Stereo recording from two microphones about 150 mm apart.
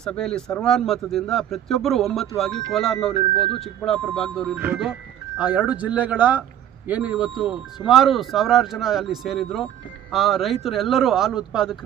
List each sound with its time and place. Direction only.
0.0 s speech: 5° left (ahead or behind)
5.4 s speech: 10° right (ahead or behind)